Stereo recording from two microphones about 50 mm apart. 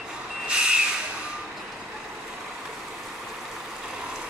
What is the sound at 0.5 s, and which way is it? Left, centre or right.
Vehicle, centre.